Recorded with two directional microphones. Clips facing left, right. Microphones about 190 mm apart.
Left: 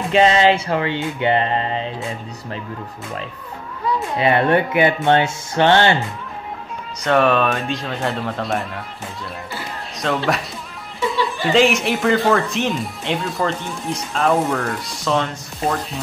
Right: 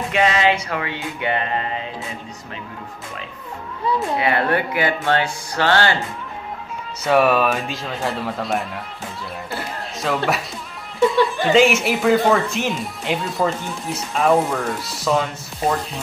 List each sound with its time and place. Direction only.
0.1 s music: 30° left (ahead or behind)
4.2 s music: 25° left (ahead or behind)
7.0 s speech: 5° right (ahead or behind)
9.9 s speech: 5° right (ahead or behind)
11.0 s music: 50° right (ahead or behind)
11.5 s speech: centre (ahead or behind)